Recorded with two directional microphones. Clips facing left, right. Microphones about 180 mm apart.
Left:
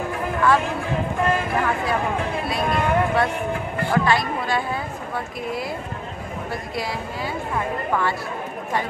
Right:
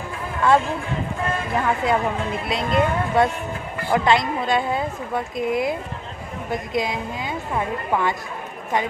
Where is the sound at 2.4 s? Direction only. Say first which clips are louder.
Right 4 dB; 20° right (ahead or behind).